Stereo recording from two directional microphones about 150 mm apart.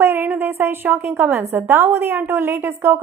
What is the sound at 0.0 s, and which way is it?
A woman's voice, 15° right (ahead or behind).